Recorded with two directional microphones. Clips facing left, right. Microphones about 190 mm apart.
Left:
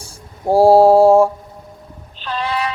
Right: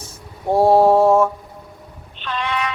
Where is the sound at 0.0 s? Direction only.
30° left (ahead or behind).